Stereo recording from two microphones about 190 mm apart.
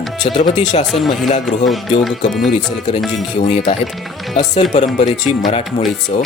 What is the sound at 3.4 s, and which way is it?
Speech, 35° left (ahead or behind).